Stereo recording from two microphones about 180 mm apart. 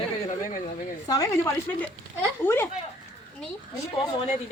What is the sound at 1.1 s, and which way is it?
Speech, 20° left (ahead or behind).